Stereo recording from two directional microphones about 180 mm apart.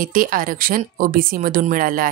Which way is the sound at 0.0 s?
50° right (ahead or behind).